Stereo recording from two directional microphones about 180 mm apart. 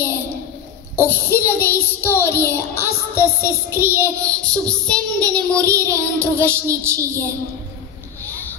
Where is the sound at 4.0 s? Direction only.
20° right (ahead or behind).